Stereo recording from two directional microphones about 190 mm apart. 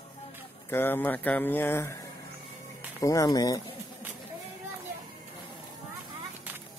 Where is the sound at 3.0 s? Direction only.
15° left (ahead or behind).